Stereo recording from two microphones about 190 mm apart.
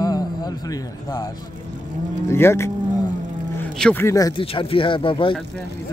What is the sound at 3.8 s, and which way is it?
Speech, 10° left (ahead or behind).